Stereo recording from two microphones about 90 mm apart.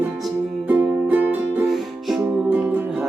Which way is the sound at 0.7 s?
15° right (ahead or behind).